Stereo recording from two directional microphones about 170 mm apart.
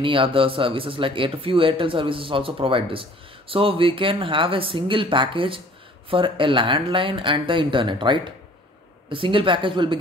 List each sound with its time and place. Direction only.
0.0 s speech: 30° right (ahead or behind)